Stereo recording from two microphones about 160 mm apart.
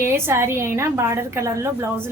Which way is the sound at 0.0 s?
15° right (ahead or behind).